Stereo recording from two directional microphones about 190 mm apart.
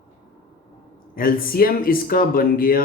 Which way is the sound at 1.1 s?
50° left (ahead or behind).